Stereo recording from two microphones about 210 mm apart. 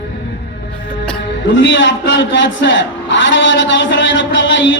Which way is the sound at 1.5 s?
60° left (ahead or behind).